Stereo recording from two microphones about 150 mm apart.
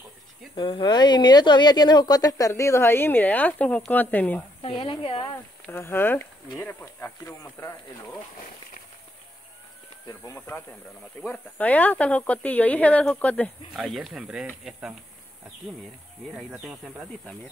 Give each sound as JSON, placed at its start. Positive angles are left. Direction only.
{"t": 0.6, "sound": "speech", "side_deg": 30}
{"t": 4.6, "sound": "speech", "side_deg": 35}
{"t": 5.3, "sound": "speech", "side_deg": 15}
{"t": 10.0, "sound": "speech", "side_deg": 20}
{"t": 13.7, "sound": "speech", "side_deg": 0}
{"t": 16.3, "sound": "speech", "side_deg": 0}